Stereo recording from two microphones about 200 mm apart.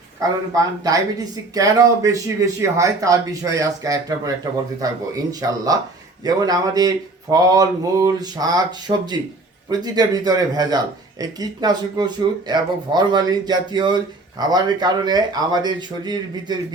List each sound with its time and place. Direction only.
0.2 s speech: 15° right (ahead or behind)